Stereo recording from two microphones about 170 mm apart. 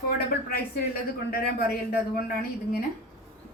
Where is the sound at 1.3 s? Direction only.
65° left (ahead or behind).